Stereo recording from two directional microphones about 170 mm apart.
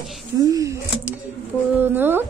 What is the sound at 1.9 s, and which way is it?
Speech, 10° right (ahead or behind).